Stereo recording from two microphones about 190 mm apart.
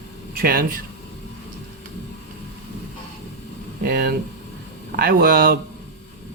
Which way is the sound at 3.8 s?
55° right (ahead or behind).